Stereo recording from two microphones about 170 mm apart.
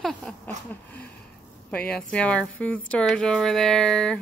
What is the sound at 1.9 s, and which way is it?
Speech, 5° left (ahead or behind).